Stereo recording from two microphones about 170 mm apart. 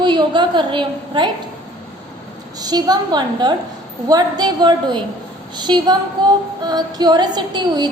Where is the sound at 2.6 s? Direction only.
25° right (ahead or behind).